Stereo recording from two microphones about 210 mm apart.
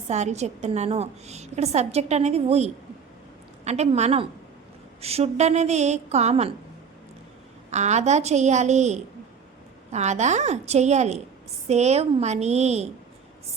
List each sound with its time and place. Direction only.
0.1 s a woman's voice: 35° right (ahead or behind)
7.7 s a woman's voice: 35° right (ahead or behind)